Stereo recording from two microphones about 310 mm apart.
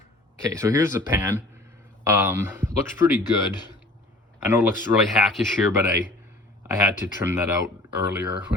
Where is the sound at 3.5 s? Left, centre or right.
Centre.